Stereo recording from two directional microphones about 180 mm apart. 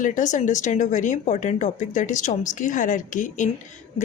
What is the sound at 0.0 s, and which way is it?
Speech, 45° left (ahead or behind).